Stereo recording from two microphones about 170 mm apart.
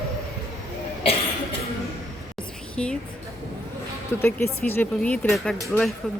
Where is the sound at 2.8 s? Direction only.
5° left (ahead or behind).